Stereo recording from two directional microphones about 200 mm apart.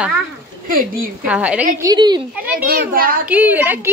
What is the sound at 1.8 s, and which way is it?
Speech, 20° right (ahead or behind).